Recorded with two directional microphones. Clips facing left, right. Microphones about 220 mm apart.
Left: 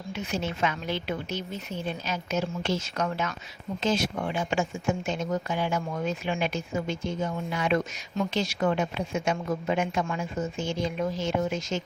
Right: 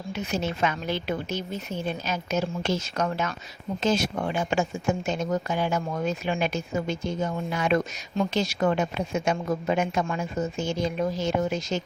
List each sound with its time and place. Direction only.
0.1 s a woman's voice: 40° right (ahead or behind)